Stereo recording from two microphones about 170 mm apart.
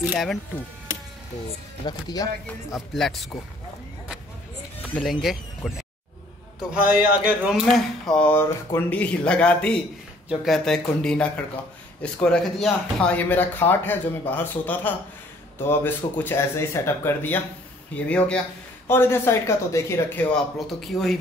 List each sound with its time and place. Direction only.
0.0 s speech: 5° right (ahead or behind)
1.9 s speech: 25° left (ahead or behind)
2.7 s speech: centre (ahead or behind)
4.8 s speech: 5° left (ahead or behind)
7.6 s speech: 5° left (ahead or behind)